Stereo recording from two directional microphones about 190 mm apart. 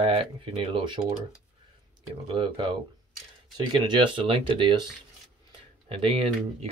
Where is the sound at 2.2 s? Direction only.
25° right (ahead or behind).